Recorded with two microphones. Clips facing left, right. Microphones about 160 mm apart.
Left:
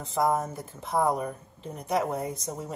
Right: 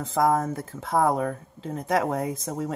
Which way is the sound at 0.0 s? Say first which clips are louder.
Right 4 dB; 90° right.